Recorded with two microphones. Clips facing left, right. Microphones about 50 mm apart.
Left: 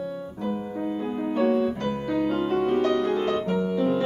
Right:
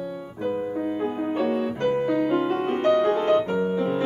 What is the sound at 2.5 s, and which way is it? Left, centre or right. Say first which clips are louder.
Music: right 1 dB; right.